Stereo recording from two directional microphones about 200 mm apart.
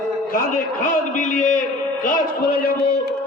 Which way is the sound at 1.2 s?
40° left (ahead or behind).